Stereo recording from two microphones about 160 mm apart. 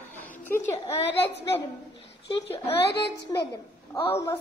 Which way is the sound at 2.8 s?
90° left.